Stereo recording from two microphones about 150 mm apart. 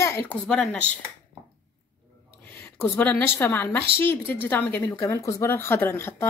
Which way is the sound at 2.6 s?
10° left (ahead or behind).